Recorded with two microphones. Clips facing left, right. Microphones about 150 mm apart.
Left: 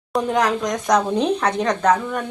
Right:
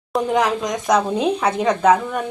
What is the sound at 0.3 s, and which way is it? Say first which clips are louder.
Speech: right 1 dB; 10° right (ahead or behind).